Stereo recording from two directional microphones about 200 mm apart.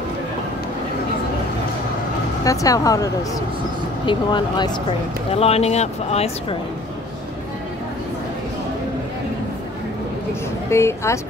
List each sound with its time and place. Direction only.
2.4 s speech: 15° left (ahead or behind)
10.7 s speech: 15° left (ahead or behind)